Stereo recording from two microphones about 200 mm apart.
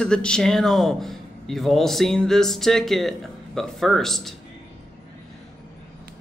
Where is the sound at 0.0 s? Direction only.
5° left (ahead or behind).